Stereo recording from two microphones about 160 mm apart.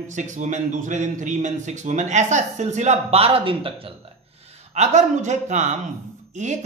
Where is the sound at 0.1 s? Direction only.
50° right (ahead or behind).